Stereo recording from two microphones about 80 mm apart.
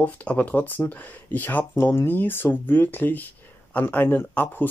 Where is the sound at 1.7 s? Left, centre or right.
Left.